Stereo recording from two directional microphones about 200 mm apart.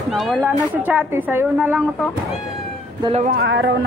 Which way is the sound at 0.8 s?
10° right (ahead or behind).